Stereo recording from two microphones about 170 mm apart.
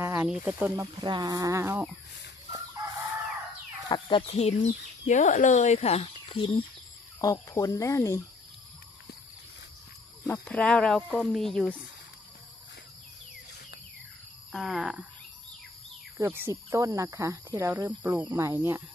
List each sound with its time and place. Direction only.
0.0 s speech: 10° right (ahead or behind)
1.0 s speech: 25° right (ahead or behind)
3.9 s speech: 30° left (ahead or behind)
5.0 s speech: 45° left (ahead or behind); by 6.6 s 30° left (ahead or behind)
7.2 s speech: 15° left (ahead or behind)
10.2 s speech: 20° left (ahead or behind)
10.5 s speech: 10° left (ahead or behind)
14.5 s speech: centre (ahead or behind)
16.2 s speech: 15° right (ahead or behind)